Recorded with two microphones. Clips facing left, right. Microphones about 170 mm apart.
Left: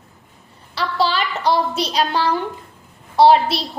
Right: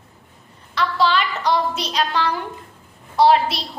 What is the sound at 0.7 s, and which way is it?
A woman's voice, 35° left (ahead or behind).